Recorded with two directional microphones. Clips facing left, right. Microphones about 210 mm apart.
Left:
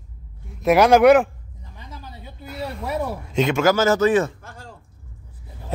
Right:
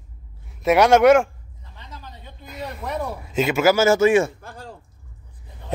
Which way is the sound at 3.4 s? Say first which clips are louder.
Right 1 dB; 5° right (ahead or behind).